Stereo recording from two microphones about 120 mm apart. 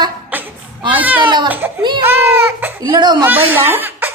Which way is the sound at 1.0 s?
15° right (ahead or behind).